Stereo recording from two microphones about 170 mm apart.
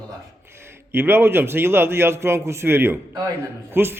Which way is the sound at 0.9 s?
15° right (ahead or behind).